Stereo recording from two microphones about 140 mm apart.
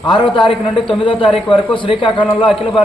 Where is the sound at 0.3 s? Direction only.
35° left (ahead or behind).